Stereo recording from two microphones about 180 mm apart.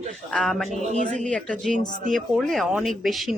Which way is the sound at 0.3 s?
5° left (ahead or behind).